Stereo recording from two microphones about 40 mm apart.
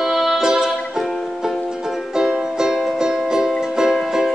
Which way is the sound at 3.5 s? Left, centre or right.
Centre.